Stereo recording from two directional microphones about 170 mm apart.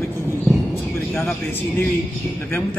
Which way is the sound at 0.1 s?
15° left (ahead or behind).